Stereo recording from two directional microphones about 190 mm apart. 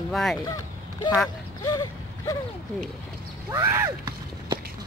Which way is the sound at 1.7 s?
20° left (ahead or behind).